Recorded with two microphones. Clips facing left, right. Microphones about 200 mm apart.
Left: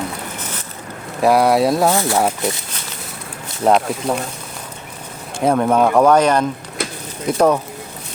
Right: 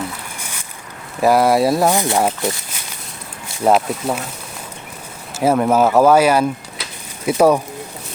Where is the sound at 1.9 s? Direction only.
15° right (ahead or behind).